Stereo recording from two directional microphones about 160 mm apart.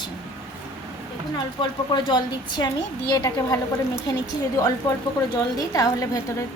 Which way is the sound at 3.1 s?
20° left (ahead or behind).